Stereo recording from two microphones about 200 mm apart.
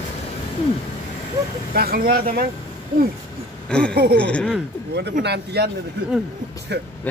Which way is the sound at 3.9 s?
55° right (ahead or behind).